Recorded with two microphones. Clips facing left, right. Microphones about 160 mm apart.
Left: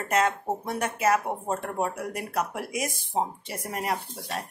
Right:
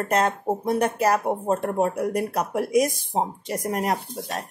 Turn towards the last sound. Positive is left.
turn(degrees=-45)  # may be behind; listen again after turning